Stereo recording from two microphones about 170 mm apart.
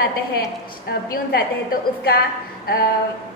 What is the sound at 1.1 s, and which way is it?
A woman's voice, 60° left (ahead or behind).